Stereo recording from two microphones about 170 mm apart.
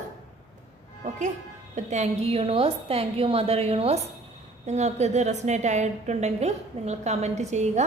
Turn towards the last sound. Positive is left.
turn(degrees=-40)  # may be behind; listen again after turning